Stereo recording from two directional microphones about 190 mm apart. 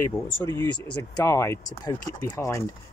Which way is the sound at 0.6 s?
15° left (ahead or behind).